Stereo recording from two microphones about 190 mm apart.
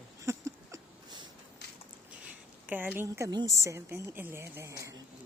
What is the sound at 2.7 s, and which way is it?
A woman's voice, 10° right (ahead or behind).